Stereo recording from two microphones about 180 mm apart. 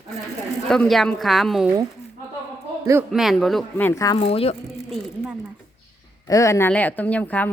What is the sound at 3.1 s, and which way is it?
Speech, centre (ahead or behind).